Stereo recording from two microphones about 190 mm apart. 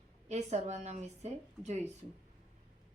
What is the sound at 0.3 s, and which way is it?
Speech, 35° right (ahead or behind).